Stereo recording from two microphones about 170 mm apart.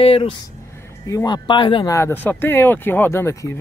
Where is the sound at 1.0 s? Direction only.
20° left (ahead or behind).